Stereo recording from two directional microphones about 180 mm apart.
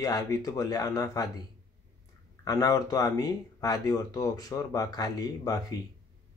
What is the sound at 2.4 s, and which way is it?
Speech, 20° left (ahead or behind).